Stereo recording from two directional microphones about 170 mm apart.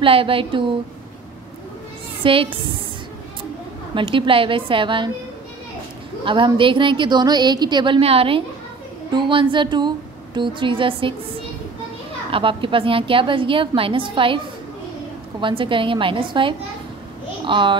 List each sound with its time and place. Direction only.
0.0 s a woman's voice: 30° right (ahead or behind)
2.2 s a woman's voice: 30° right (ahead or behind)
3.9 s a woman's voice: 30° right (ahead or behind)
6.2 s a woman's voice: 30° right (ahead or behind)
12.3 s a woman's voice: 30° right (ahead or behind)
15.4 s a woman's voice: 30° right (ahead or behind)